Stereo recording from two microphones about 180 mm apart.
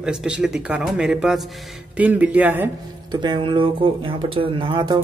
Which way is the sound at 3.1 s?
25° right (ahead or behind).